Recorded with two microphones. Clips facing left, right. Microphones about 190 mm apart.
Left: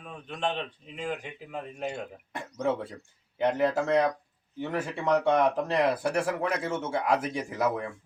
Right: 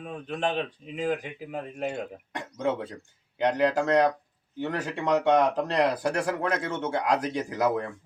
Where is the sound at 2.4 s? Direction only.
5° left (ahead or behind).